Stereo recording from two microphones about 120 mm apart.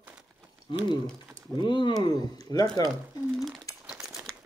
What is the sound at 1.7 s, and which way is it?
Speech, 40° left (ahead or behind).